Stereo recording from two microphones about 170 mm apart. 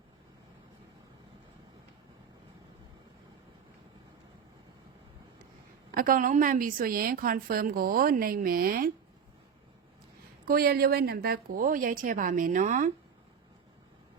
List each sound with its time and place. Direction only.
5.9 s a woman's voice: 55° right (ahead or behind)
10.4 s a woman's voice: 60° right (ahead or behind)